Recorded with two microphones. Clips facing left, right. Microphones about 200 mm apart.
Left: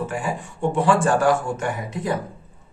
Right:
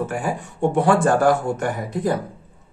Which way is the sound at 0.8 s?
60° right (ahead or behind).